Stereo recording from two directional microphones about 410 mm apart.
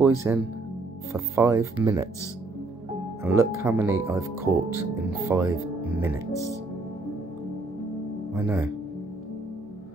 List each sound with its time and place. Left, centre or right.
0.0 s speech: centre
3.2 s speech: centre
6.3 s speech: centre
8.3 s speech: centre